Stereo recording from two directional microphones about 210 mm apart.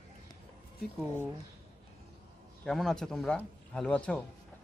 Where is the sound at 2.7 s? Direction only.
Centre (ahead or behind).